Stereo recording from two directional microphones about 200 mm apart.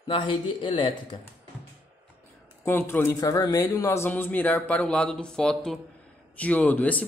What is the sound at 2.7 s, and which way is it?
A man's voice, 10° left (ahead or behind).